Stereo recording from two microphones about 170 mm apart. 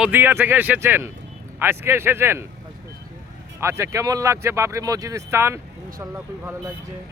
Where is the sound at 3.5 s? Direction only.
15° right (ahead or behind).